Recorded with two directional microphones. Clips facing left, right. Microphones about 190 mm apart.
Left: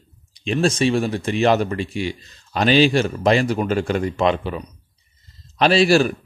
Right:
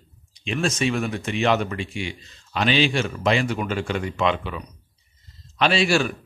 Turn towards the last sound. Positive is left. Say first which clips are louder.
# left 5 dB
turn(degrees=40)  # may be behind; listen again after turning